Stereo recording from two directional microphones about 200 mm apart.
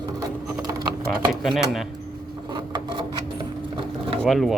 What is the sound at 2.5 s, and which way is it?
Printer, 20° right (ahead or behind).